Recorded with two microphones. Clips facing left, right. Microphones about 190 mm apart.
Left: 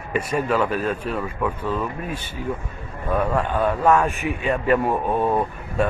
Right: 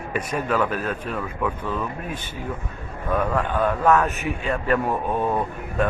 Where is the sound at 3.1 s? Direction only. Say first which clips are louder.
Left 1 dB; 10° left (ahead or behind).